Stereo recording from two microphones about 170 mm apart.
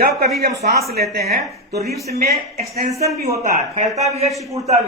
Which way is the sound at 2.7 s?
40° right (ahead or behind).